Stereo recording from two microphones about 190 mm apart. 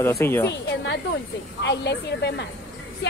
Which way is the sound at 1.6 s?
65° left (ahead or behind).